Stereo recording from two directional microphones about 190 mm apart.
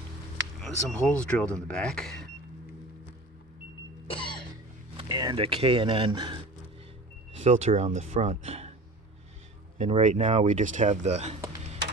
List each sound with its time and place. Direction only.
0.6 s speech: centre (ahead or behind)
4.1 s cough: 25° left (ahead or behind)
4.9 s speech: 25° right (ahead or behind)
9.8 s speech: 35° right (ahead or behind)